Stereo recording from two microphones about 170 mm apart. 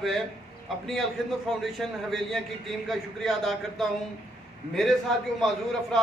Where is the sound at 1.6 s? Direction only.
Centre (ahead or behind).